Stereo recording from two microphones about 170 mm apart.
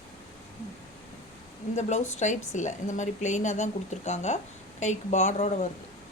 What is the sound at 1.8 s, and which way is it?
A woman's voice, 40° left (ahead or behind).